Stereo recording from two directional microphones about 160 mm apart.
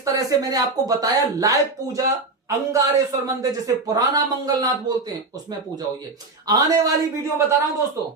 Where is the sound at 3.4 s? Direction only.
20° right (ahead or behind).